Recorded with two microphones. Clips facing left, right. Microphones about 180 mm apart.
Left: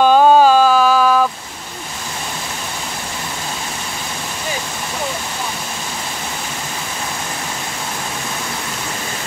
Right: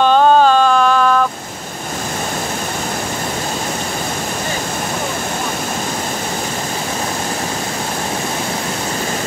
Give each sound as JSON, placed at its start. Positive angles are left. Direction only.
{"t": 0.0, "sound": "mantra", "side_deg": 10}